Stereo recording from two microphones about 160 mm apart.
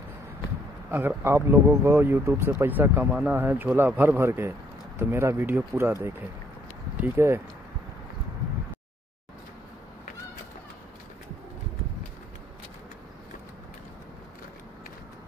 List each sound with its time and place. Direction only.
0.9 s speech: 15° right (ahead or behind)
7.0 s speech: 15° right (ahead or behind)